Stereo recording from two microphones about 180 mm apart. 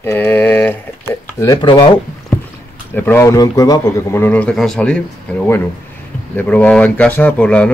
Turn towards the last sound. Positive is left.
turn(degrees=5)  # may be behind; listen again after turning